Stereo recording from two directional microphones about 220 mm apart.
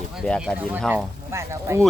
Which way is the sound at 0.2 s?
Centre (ahead or behind).